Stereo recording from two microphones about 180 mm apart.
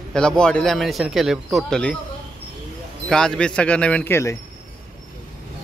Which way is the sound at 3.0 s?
5° left (ahead or behind).